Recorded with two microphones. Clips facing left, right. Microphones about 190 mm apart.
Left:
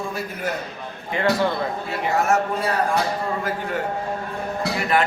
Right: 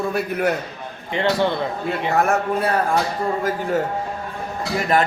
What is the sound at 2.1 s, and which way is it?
Speech, 60° right (ahead or behind).